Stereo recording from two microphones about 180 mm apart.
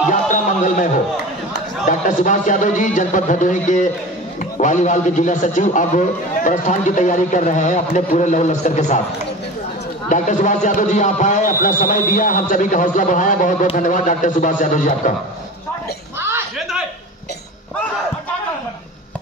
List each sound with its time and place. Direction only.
0.1 s music: 45° left (ahead or behind)
1.9 s a man's voice: 45° left (ahead or behind)
10.0 s a man's voice: 45° left (ahead or behind)
16.2 s a sound: 15° right (ahead or behind)